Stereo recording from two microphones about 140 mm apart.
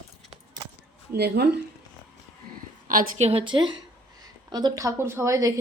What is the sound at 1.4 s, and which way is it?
Speech, 90° right.